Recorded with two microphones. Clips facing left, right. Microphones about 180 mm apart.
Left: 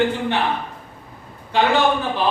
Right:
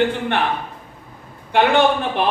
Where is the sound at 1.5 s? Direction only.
60° right (ahead or behind).